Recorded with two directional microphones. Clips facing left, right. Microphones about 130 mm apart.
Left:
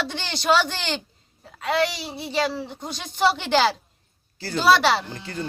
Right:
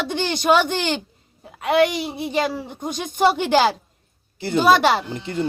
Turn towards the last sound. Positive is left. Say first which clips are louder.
# right 7 dB
turn(degrees=-20)  # may be behind; listen again after turning